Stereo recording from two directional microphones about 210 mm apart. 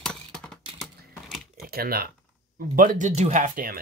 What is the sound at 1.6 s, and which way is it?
Speech, 45° right (ahead or behind).